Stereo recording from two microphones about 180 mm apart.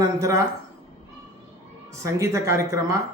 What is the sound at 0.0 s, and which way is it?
Speech, 15° right (ahead or behind).